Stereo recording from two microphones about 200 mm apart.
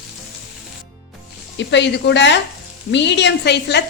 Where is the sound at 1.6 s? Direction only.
60° left (ahead or behind).